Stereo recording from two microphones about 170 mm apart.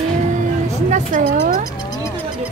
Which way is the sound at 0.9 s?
40° right (ahead or behind).